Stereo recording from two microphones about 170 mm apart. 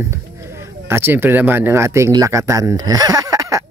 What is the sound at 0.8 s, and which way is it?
Speech, 15° right (ahead or behind).